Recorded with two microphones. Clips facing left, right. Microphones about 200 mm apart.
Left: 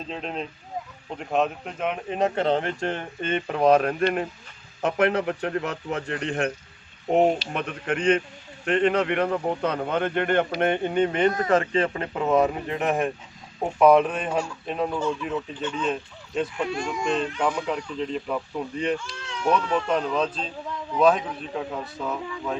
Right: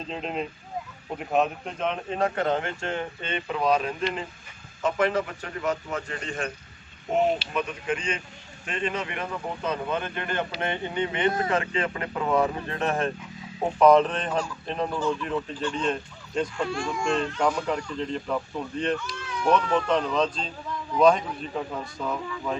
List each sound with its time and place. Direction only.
0.1 s speech: centre (ahead or behind)
2.1 s speech: 25° left (ahead or behind); by 6.5 s 65° left (ahead or behind)
7.5 s speech: 60° left (ahead or behind); by 16.5 s 5° left (ahead or behind)
16.6 s speech: 20° left (ahead or behind)
17.4 s speech: centre (ahead or behind)
19.0 s speech: 25° left (ahead or behind)
19.9 s speech: 5° left (ahead or behind)